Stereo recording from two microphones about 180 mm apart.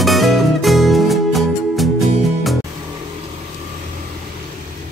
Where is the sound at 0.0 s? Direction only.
Centre (ahead or behind).